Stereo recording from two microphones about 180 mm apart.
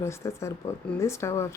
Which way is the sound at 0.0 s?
15° left (ahead or behind).